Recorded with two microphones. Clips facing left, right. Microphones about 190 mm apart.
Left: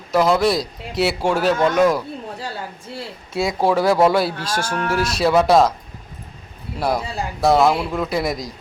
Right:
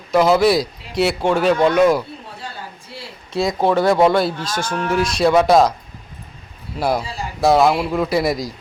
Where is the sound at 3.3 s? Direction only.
5° left (ahead or behind).